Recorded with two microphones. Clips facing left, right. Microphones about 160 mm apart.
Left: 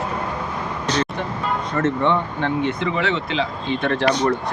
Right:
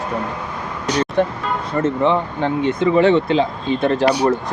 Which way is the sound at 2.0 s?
35° right (ahead or behind).